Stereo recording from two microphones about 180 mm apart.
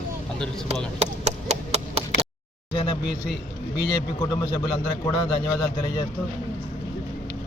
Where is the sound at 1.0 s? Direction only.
40° right (ahead or behind).